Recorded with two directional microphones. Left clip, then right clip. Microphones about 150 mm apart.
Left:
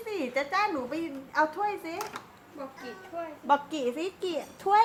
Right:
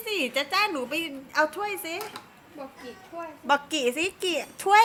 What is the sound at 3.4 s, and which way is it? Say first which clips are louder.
A woman's voice: right 2 dB; 10° right (ahead or behind).